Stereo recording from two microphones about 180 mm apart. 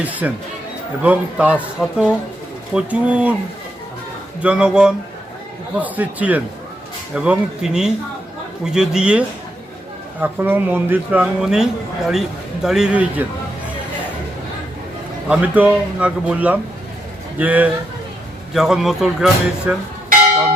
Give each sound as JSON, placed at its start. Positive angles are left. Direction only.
{"t": 0.0, "sound": "speech", "side_deg": -10}
{"t": 4.4, "sound": "speech", "side_deg": -5}
{"t": 15.3, "sound": "speech", "side_deg": -5}